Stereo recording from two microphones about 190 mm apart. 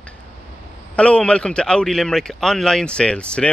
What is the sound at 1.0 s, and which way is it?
Speech, 5° left (ahead or behind).